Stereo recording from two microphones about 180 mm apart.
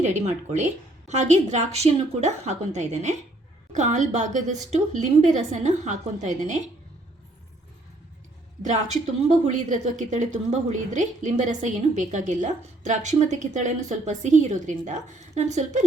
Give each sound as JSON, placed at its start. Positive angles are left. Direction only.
{"t": 0.0, "sound": "a woman's voice", "side_deg": -40}
{"t": 9.2, "sound": "a woman's voice", "side_deg": -40}